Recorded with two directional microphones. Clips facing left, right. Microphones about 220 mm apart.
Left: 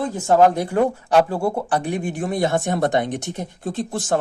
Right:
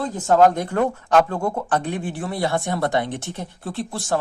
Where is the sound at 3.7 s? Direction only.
50° left (ahead or behind).